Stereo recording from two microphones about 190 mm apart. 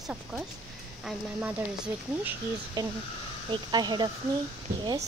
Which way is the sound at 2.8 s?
20° right (ahead or behind).